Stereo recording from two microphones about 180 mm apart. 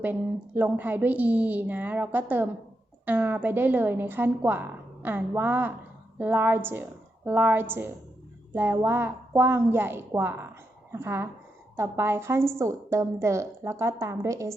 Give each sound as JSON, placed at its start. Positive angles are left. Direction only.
{"t": 0.0, "sound": "a woman's voice", "side_deg": -10}